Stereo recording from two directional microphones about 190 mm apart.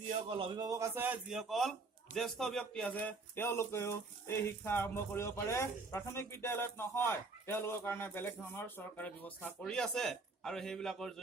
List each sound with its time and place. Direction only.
0.1 s a man's voice: 30° right (ahead or behind); by 11.1 s 5° left (ahead or behind)